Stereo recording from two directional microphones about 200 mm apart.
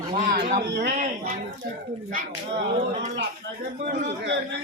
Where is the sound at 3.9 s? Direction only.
55° right (ahead or behind).